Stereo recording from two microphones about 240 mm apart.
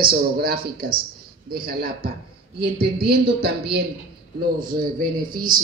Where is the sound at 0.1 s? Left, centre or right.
Right.